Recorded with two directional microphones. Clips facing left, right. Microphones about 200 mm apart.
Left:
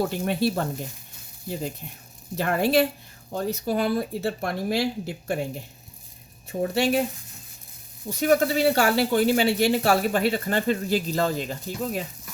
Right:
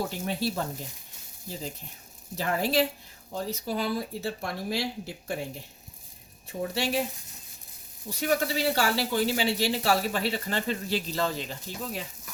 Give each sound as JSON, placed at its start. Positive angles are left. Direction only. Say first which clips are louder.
{"t": 0.1, "sound": "speech", "louder": "left 6 dB", "side_deg": 60}
{"t": 2.3, "sound": "speech", "louder": "left 5 dB", "side_deg": 60}
{"t": 6.5, "sound": "speech", "louder": "left 6 dB", "side_deg": 50}
{"t": 8.2, "sound": "speech", "louder": "left 7 dB", "side_deg": 45}